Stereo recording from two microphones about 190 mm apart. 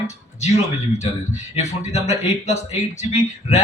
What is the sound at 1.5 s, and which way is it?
Speech, 35° left (ahead or behind).